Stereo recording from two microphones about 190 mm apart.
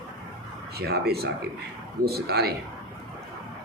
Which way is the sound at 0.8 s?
55° right (ahead or behind).